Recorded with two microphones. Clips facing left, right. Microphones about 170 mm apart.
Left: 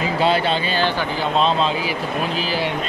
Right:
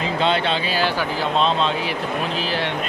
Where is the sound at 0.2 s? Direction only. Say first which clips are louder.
Left 2 dB; 5° left (ahead or behind).